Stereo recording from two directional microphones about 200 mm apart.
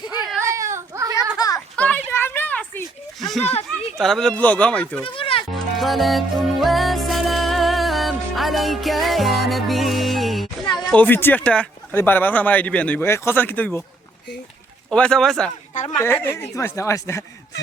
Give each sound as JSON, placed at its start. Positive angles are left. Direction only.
{"t": 0.4, "sound": "baby cry", "side_deg": -15}
{"t": 1.4, "sound": "children playing", "side_deg": 20}
{"t": 1.7, "sound": "a sound", "side_deg": 5}
{"t": 3.9, "sound": "speech", "side_deg": 0}
{"t": 5.0, "sound": "music", "side_deg": 25}
{"t": 5.5, "sound": "music", "side_deg": 0}
{"t": 10.8, "sound": "speech", "side_deg": 10}
{"t": 14.8, "sound": "speech", "side_deg": 5}